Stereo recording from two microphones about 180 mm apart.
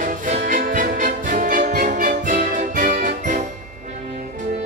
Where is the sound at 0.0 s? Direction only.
45° right (ahead or behind).